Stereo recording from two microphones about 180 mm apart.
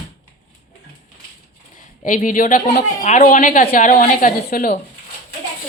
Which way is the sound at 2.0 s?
45° left (ahead or behind).